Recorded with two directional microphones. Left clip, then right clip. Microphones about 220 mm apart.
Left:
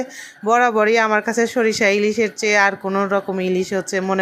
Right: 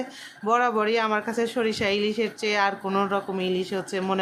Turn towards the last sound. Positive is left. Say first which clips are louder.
# left 6 dB
turn(degrees=20)  # may be behind; listen again after turning